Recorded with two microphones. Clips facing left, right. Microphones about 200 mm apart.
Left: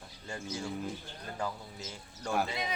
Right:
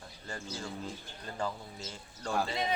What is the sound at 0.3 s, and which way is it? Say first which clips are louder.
Speech: left 3 dB; 10° left (ahead or behind).